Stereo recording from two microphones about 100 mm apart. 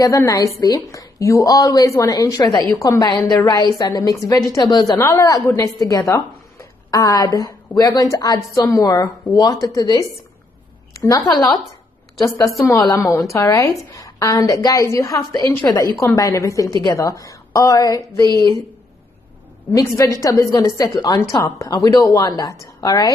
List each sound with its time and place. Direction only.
0.3 s speech: 35° left (ahead or behind)
4.6 s a woman's voice: 50° left (ahead or behind)
5.1 s a woman's voice: 35° left (ahead or behind)
18.2 s speech: 50° right (ahead or behind)
19.7 s speech: 35° left (ahead or behind)